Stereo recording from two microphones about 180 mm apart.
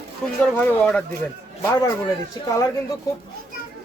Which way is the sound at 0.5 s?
10° left (ahead or behind).